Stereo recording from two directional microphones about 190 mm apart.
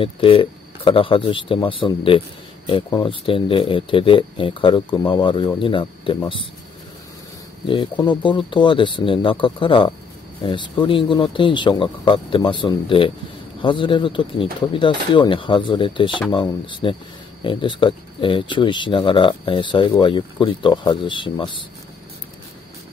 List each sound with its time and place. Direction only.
0.0 s speech: 30° left (ahead or behind)
7.6 s speech: 25° left (ahead or behind)